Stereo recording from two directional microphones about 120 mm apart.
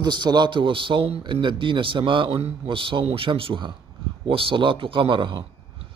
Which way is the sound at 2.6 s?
45° right (ahead or behind).